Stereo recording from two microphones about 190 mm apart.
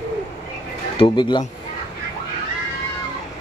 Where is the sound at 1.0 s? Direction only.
25° left (ahead or behind).